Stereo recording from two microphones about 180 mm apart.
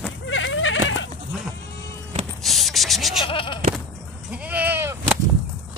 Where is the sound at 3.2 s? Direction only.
30° left (ahead or behind).